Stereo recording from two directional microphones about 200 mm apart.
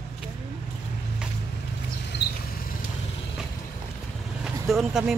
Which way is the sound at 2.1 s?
60° left (ahead or behind).